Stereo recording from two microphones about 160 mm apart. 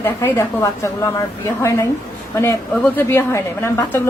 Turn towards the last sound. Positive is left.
turn(degrees=15)  # may be behind; listen again after turning